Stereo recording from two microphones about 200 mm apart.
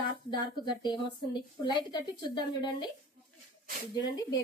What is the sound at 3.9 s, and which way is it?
Speech, 20° left (ahead or behind).